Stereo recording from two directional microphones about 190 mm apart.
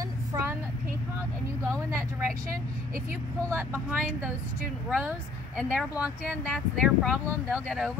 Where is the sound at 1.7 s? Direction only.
15° right (ahead or behind).